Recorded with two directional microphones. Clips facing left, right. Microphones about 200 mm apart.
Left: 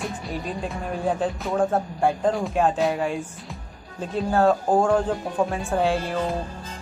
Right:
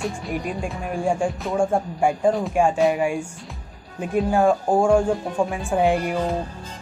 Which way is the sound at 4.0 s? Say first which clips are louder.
Right 2 dB; 10° right (ahead or behind).